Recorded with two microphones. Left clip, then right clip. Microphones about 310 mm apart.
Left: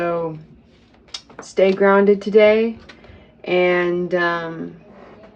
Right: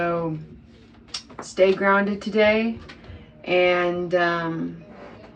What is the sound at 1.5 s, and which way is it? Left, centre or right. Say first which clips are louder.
Speech: left 4 dB; left.